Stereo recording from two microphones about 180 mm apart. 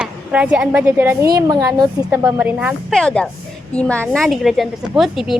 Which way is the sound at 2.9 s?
5° left (ahead or behind).